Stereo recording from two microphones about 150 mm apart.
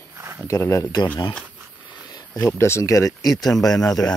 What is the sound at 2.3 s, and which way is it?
Speech, 15° left (ahead or behind).